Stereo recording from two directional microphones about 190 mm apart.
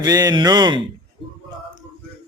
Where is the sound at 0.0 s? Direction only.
20° right (ahead or behind).